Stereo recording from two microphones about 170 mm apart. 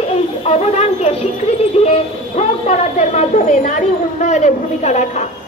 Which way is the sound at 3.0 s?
45° left (ahead or behind).